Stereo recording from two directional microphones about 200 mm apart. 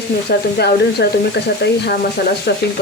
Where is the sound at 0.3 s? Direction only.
55° left (ahead or behind).